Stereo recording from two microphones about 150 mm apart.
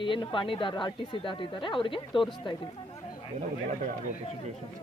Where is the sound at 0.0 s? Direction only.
35° left (ahead or behind).